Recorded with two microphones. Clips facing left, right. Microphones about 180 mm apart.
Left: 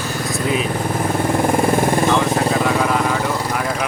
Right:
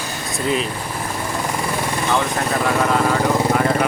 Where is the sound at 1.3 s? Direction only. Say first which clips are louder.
Left 8 dB; 50° left (ahead or behind).